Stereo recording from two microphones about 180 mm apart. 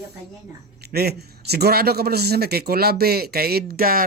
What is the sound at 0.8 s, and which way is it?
A man's voice, 60° right (ahead or behind).